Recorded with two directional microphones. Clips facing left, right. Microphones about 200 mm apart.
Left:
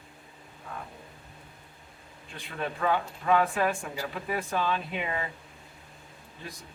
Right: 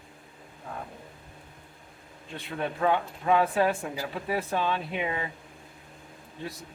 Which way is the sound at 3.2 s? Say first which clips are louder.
Right 2 dB; 25° right (ahead or behind).